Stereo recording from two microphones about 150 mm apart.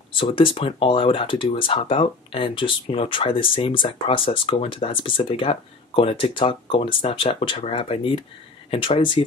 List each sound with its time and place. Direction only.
0.1 s speech: 35° left (ahead or behind)